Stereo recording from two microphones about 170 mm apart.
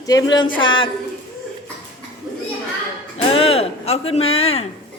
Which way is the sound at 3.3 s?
35° left (ahead or behind).